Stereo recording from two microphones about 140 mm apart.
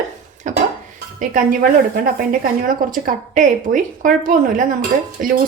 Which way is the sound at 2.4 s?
75° right (ahead or behind).